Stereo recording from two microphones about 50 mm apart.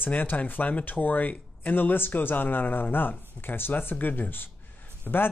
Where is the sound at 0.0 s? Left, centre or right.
Left.